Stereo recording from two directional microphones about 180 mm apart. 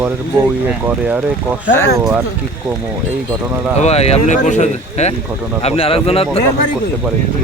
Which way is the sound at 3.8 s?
35° left (ahead or behind).